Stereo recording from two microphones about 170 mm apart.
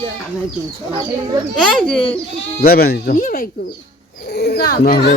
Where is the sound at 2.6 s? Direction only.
60° left (ahead or behind).